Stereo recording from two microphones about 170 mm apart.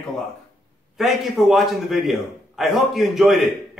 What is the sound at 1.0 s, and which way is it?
A man's voice, centre (ahead or behind).